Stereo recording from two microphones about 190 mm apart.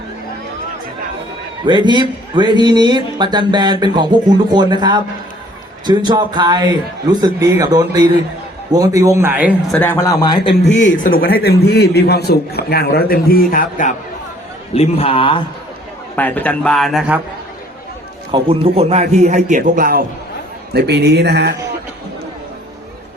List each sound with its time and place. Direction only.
1.6 s a man's voice: 25° right (ahead or behind)
9.7 s a man's voice: 10° left (ahead or behind)
10.5 s speech: 65° left (ahead or behind)
11.0 s a man's voice: 50° left (ahead or behind)
14.8 s a man's voice: 30° left (ahead or behind)
16.1 s a man's voice: 10° left (ahead or behind)
18.3 s a man's voice: 25° right (ahead or behind); by 20.1 s 50° right (ahead or behind)
20.7 s speech: 60° right (ahead or behind)